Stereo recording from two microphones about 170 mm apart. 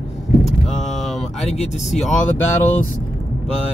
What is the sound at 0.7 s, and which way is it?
Speech, centre (ahead or behind).